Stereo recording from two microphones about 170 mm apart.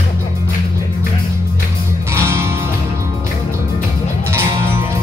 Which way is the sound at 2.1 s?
15° right (ahead or behind).